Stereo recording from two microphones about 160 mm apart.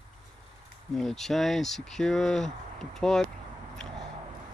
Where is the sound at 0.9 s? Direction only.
Centre (ahead or behind).